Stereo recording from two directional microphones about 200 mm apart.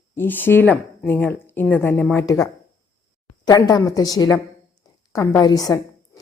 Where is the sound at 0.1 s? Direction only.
10° left (ahead or behind).